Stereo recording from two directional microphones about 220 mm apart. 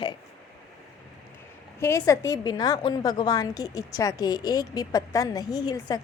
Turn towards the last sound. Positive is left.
turn(degrees=15)  # may be behind; listen again after turning